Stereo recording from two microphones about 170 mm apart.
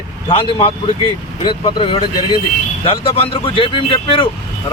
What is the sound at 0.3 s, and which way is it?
Speech, 30° left (ahead or behind).